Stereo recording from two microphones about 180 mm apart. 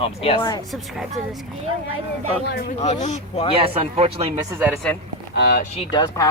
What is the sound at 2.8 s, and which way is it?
Speech, 40° left (ahead or behind).